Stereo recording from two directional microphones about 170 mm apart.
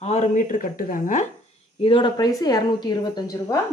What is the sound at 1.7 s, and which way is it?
A woman's voice, 30° left (ahead or behind).